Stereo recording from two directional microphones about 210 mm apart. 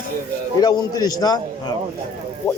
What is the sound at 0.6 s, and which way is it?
Speech, 20° left (ahead or behind).